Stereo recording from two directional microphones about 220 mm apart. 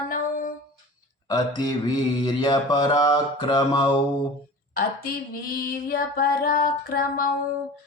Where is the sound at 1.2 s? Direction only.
15° left (ahead or behind).